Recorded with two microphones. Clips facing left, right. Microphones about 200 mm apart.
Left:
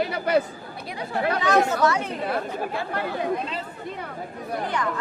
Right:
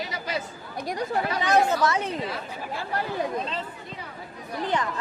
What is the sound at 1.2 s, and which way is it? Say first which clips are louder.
Speech: left 3 dB; 55° left (ahead or behind).